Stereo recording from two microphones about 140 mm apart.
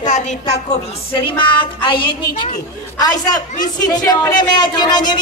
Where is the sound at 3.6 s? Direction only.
25° left (ahead or behind).